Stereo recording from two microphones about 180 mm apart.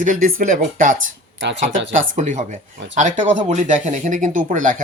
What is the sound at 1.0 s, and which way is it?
Speech, 90° right.